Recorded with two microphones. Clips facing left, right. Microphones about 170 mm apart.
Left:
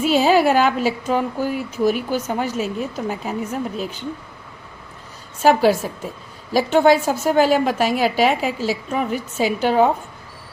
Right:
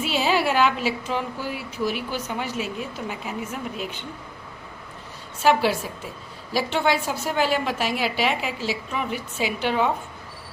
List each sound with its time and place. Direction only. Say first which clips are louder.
0.0 s speech: left 7 dB; 45° left (ahead or behind)
5.4 s speech: left 5 dB; 40° left (ahead or behind)